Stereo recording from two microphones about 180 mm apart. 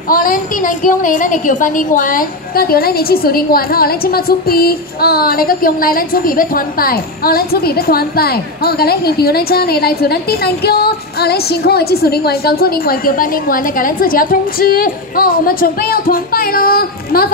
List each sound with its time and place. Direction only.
0.1 s a woman's voice: 50° left (ahead or behind)